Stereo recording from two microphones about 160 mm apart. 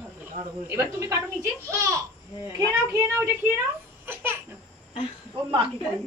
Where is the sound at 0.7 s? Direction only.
15° right (ahead or behind).